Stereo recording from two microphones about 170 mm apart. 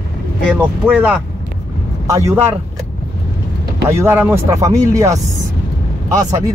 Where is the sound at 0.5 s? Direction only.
5° right (ahead or behind).